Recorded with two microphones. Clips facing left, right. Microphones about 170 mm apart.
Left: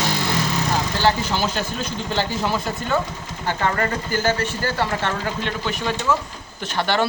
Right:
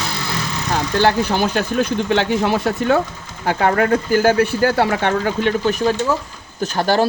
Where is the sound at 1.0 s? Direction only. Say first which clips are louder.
Right 6 dB; 55° right (ahead or behind).